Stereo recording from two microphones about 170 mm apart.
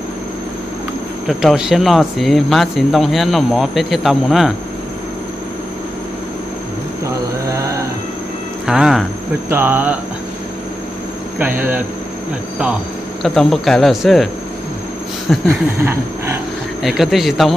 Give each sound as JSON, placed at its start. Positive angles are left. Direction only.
{"t": 1.2, "sound": "speech", "side_deg": 0}
{"t": 8.6, "sound": "speech", "side_deg": -5}
{"t": 11.3, "sound": "speech", "side_deg": -10}
{"t": 13.2, "sound": "speech", "side_deg": 0}
{"t": 15.8, "sound": "a sound", "side_deg": -15}
{"t": 16.8, "sound": "speech", "side_deg": 0}